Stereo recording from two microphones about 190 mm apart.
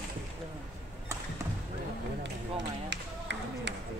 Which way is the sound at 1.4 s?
15° right (ahead or behind).